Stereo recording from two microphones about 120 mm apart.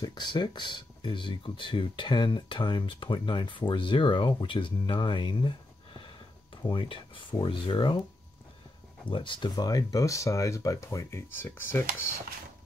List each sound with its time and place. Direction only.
0.0 s speech: 35° left (ahead or behind)
6.7 s speech: 40° left (ahead or behind)
9.0 s speech: 45° left (ahead or behind); by 12.1 s 20° left (ahead or behind)